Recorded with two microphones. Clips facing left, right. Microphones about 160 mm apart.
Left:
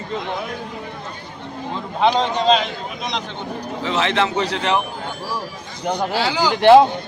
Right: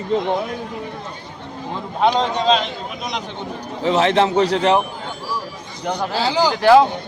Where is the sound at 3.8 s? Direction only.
40° right (ahead or behind).